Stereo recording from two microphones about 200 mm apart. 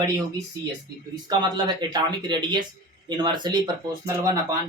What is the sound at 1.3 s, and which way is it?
Speech, 20° right (ahead or behind).